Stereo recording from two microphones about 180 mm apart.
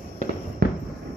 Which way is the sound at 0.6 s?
65° right (ahead or behind).